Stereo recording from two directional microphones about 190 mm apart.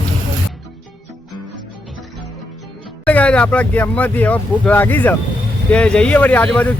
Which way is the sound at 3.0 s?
5° left (ahead or behind).